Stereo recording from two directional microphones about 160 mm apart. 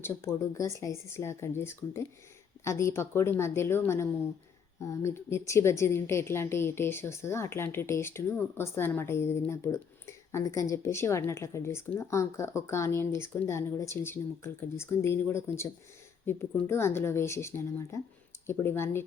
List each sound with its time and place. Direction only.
0.0 s a woman's voice: 20° left (ahead or behind)